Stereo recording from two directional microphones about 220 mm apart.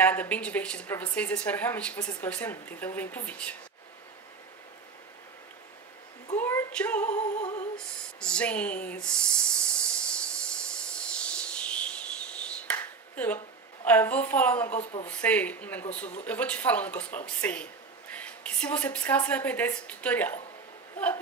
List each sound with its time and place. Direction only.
0.0 s a woman's voice: 5° left (ahead or behind)
6.4 s female singing: 10° left (ahead or behind)
7.7 s a sound: 5° left (ahead or behind)
13.8 s a woman's voice: 10° left (ahead or behind)
14.7 s speech: 30° left (ahead or behind)
15.0 s a woman's voice: 5° left (ahead or behind)